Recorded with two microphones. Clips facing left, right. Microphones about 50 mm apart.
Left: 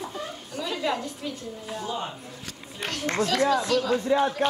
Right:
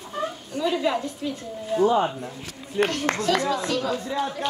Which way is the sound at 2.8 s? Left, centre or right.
Right.